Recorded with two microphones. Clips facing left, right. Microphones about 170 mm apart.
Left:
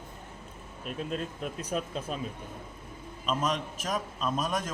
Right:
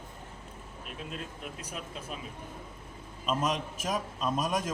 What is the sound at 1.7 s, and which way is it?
Speech, 40° left (ahead or behind).